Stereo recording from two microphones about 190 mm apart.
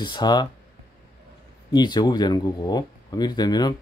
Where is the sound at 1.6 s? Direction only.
25° left (ahead or behind).